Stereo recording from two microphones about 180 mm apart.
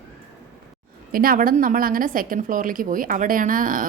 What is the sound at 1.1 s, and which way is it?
A woman's voice, 55° right (ahead or behind).